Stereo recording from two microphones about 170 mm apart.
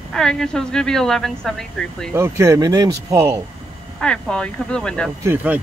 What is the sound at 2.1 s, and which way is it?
Speech, 15° right (ahead or behind).